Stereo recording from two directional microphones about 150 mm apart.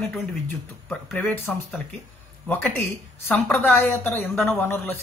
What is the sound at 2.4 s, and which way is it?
Speech, 15° left (ahead or behind).